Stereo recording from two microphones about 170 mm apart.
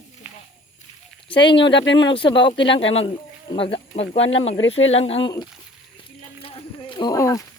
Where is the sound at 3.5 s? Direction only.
30° left (ahead or behind).